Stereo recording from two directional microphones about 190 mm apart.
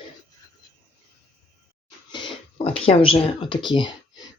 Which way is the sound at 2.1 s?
30° left (ahead or behind).